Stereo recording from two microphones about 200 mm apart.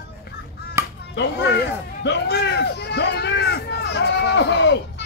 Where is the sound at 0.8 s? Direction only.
15° right (ahead or behind).